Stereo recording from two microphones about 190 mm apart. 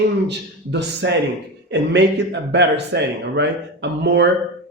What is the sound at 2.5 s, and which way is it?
A man's voice, 65° right (ahead or behind).